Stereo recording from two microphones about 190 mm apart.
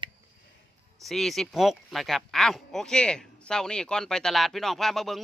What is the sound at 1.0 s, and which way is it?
Speech, centre (ahead or behind).